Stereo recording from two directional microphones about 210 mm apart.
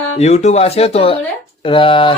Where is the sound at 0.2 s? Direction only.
30° left (ahead or behind).